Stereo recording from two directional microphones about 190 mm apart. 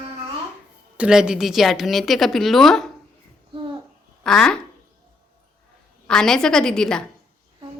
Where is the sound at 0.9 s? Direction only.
5° right (ahead or behind).